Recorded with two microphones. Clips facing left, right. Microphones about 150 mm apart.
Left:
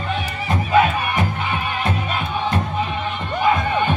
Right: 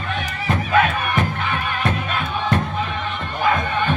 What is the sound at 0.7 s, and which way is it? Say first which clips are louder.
Music: left 2 dB; 10° left (ahead or behind).